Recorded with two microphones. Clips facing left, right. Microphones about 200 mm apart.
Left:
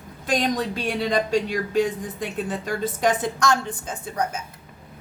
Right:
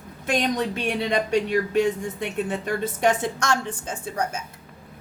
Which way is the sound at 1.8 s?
25° right (ahead or behind).